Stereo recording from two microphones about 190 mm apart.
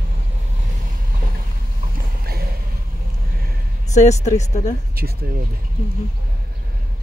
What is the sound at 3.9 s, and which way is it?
Speech, 35° left (ahead or behind).